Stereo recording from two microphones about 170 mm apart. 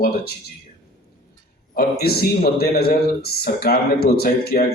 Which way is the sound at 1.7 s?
65° left (ahead or behind).